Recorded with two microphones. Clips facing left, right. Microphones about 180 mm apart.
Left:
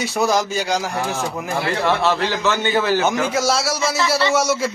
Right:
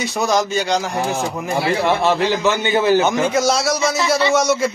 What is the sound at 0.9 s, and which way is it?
A man's voice, 10° right (ahead or behind).